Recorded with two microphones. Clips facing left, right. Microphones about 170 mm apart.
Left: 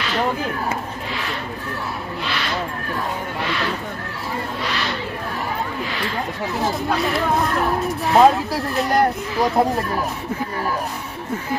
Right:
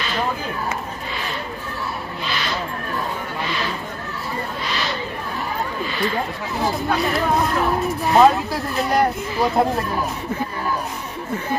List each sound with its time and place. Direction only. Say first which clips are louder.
6.6 s speech: right 1 dB; centre (ahead or behind)